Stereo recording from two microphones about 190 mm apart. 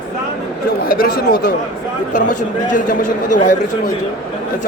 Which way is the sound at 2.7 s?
45° left (ahead or behind).